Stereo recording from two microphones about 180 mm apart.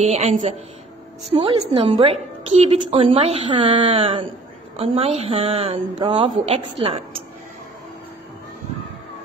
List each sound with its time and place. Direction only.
0.0 s a woman's voice: 40° right (ahead or behind)